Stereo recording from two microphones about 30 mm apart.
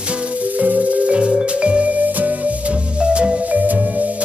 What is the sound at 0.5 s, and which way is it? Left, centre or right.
Music, right.